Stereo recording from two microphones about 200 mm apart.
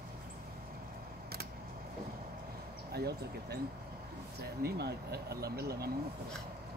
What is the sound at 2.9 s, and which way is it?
Speech, 55° right (ahead or behind).